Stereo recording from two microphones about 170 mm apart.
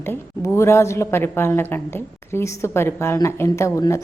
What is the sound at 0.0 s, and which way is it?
A woman's voice, 15° left (ahead or behind).